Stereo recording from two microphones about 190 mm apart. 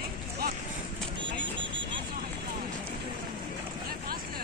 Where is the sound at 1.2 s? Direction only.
75° right (ahead or behind).